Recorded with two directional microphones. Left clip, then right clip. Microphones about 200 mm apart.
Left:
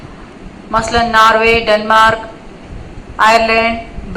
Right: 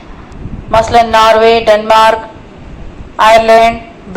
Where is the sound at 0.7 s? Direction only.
55° right (ahead or behind).